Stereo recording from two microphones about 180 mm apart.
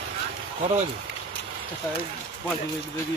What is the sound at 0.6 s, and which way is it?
Speech, 35° right (ahead or behind).